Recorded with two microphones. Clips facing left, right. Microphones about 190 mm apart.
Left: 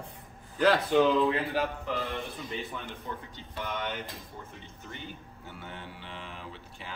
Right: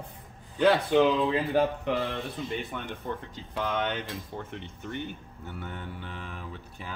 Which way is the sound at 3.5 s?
90° right.